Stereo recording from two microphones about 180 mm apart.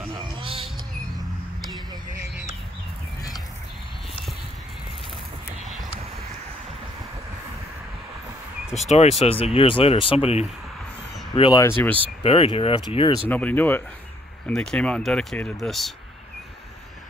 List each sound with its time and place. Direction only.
0.1 s bird: 30° right (ahead or behind)
8.7 s speech: 40° left (ahead or behind)
13.3 s speech: 10° left (ahead or behind)